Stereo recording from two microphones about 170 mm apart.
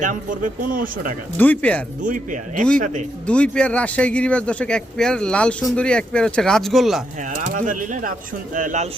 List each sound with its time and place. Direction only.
0.0 s speech: 50° right (ahead or behind)
1.4 s speech: 10° left (ahead or behind)
2.0 s speech: 50° right (ahead or behind)
3.2 s speech: 5° left (ahead or behind)
7.5 s speech: 50° right (ahead or behind)